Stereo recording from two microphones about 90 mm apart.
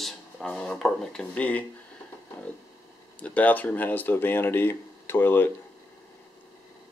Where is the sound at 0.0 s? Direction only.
5° left (ahead or behind).